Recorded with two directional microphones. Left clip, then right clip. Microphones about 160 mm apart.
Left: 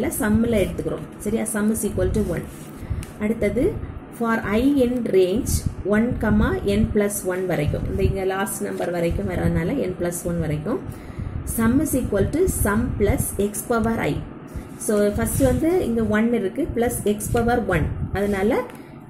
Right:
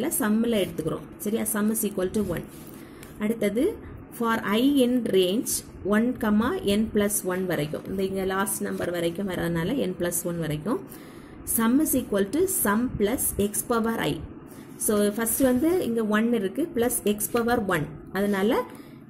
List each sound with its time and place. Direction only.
0.0 s speech: 40° right (ahead or behind)